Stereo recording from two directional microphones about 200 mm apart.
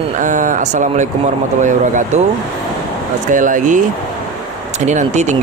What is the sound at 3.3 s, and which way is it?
Speech, 40° right (ahead or behind).